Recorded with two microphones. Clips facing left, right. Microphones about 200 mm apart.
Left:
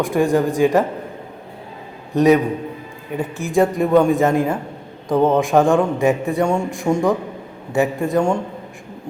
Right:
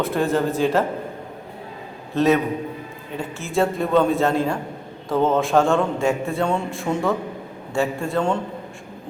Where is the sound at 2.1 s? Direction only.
15° left (ahead or behind).